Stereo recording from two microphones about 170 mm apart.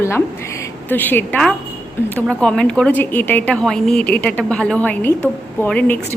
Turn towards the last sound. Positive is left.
turn(degrees=10)  # may be behind; listen again after turning